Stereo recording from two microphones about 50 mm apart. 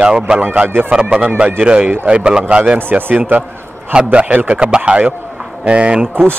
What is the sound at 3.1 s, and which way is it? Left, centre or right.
A man's voice, right.